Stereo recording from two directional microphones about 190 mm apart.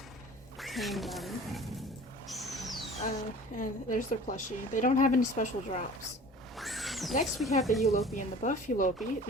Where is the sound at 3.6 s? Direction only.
45° left (ahead or behind).